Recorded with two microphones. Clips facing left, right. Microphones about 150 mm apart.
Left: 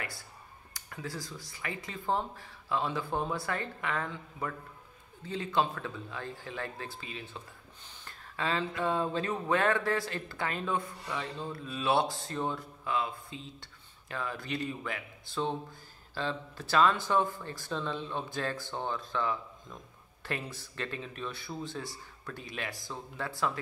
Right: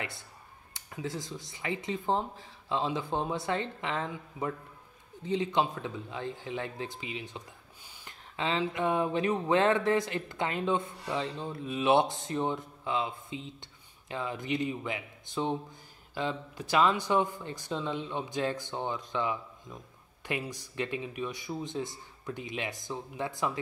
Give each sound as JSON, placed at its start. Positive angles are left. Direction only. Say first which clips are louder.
{"t": 0.7, "sound": "speech", "louder": "right 3 dB", "side_deg": -20}